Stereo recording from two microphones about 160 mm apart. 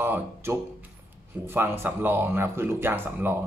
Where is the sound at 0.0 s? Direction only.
15° right (ahead or behind).